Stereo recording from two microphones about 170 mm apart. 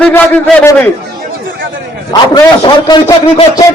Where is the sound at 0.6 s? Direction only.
15° left (ahead or behind).